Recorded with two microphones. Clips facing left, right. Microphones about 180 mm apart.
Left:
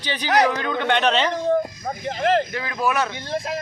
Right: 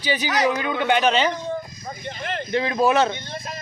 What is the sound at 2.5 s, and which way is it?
Speech, 25° right (ahead or behind).